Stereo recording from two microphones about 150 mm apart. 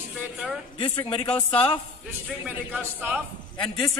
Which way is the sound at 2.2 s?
10° right (ahead or behind).